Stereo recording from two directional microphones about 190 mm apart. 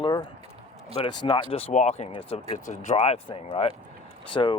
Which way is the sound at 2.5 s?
40° left (ahead or behind).